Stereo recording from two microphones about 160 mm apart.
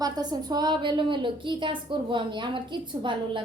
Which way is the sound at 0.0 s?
25° right (ahead or behind).